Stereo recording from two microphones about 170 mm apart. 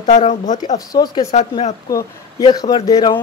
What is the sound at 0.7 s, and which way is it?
Speech, 20° left (ahead or behind).